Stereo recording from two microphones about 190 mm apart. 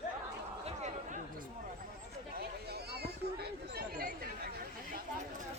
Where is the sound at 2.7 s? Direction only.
55° right (ahead or behind).